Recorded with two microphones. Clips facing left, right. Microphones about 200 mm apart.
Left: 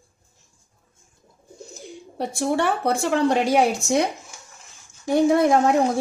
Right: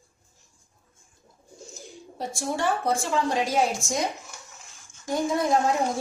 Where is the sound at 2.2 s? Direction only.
65° left (ahead or behind).